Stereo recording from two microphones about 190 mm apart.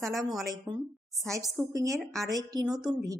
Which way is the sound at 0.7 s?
20° right (ahead or behind).